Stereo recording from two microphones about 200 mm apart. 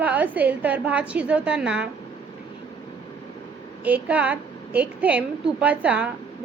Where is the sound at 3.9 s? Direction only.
5° right (ahead or behind).